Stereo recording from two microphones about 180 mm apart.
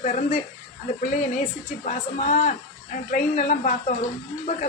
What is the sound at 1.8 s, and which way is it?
A man's voice, 40° left (ahead or behind).